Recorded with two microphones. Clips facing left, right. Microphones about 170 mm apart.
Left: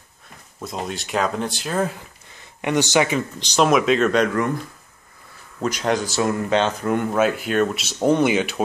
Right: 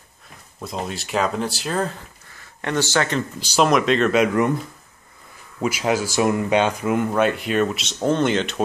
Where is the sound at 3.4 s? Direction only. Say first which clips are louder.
Even; 5° right (ahead or behind).